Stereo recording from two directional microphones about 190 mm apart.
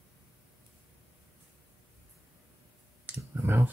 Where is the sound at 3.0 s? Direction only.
10° right (ahead or behind).